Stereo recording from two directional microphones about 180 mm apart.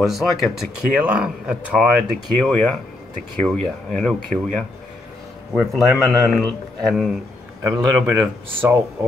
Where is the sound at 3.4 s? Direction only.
5° left (ahead or behind).